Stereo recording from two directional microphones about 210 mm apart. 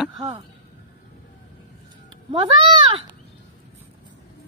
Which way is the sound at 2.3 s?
25° right (ahead or behind).